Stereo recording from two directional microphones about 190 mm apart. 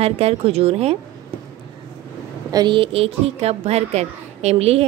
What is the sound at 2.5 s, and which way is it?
A woman's voice, 25° right (ahead or behind).